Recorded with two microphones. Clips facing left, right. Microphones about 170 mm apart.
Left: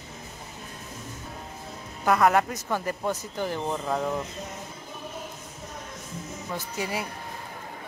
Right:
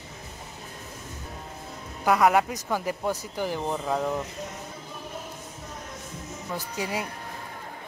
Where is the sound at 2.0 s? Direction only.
10° right (ahead or behind).